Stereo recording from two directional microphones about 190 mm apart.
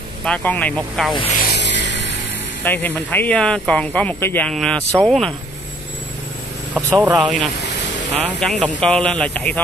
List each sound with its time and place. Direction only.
0.2 s speech: 5° left (ahead or behind)
1.5 s music: 65° left (ahead or behind)
2.6 s speech: 10° left (ahead or behind)
6.7 s speech: 5° right (ahead or behind)